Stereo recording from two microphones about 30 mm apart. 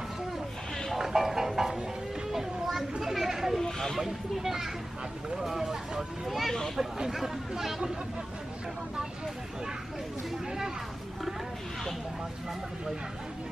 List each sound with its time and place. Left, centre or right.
0.9 s music: centre
2.3 s a sound: centre
3.0 s children playing: centre
3.6 s snake: centre
4.0 s speech: centre